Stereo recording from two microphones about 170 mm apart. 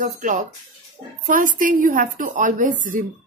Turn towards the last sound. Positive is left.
turn(degrees=-50)  # may be behind; listen again after turning